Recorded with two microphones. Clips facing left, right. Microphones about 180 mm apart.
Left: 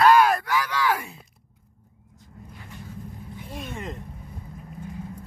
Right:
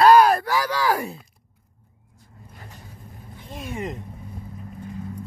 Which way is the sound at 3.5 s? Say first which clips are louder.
Right 4 dB; 10° right (ahead or behind).